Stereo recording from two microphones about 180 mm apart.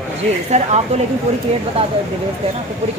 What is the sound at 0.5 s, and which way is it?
Speech, 40° right (ahead or behind).